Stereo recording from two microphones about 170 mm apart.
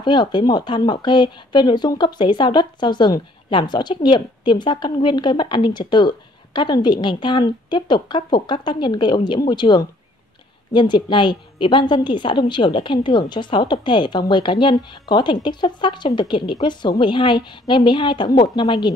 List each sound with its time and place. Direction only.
0.0 s speech: 25° left (ahead or behind)